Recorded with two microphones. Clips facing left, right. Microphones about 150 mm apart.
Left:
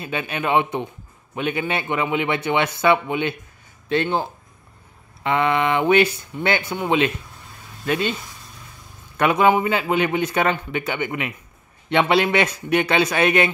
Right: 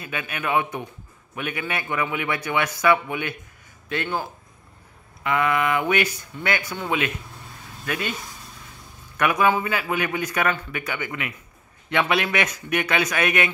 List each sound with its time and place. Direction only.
0.0 s a man's voice: 25° left (ahead or behind)